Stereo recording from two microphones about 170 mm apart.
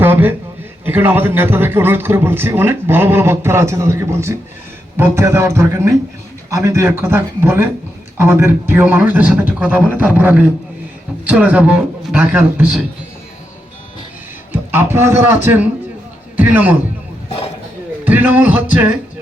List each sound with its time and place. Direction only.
0.0 s a sound: 10° right (ahead or behind)
0.9 s a man's voice: 10° right (ahead or behind)
14.5 s a man's voice: 15° right (ahead or behind)
18.0 s a man's voice: 10° right (ahead or behind)